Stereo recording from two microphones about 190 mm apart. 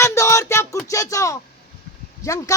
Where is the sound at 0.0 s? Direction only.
15° left (ahead or behind).